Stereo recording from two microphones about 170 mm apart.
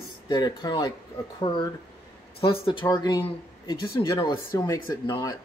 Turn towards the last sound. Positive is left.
turn(degrees=25)  # may be behind; listen again after turning